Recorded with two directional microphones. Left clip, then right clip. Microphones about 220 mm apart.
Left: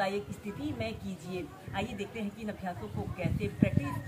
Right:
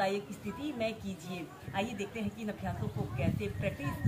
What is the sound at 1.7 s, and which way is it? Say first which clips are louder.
Speech: right 2 dB; 5° left (ahead or behind).